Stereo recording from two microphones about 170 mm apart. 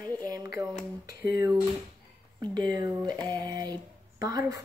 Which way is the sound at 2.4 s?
25° right (ahead or behind).